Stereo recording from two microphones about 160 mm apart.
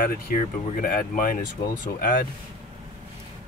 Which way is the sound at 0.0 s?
65° left (ahead or behind).